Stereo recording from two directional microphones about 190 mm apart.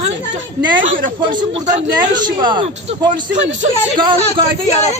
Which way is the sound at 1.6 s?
35° right (ahead or behind).